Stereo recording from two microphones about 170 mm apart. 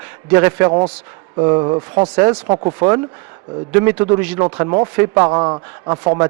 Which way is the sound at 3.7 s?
10° right (ahead or behind).